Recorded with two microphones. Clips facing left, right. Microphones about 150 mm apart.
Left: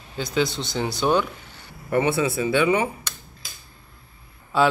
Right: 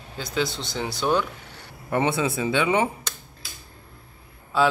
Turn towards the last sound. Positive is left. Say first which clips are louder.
# left 1 dB
turn(degrees=0)  # may be behind; listen again after turning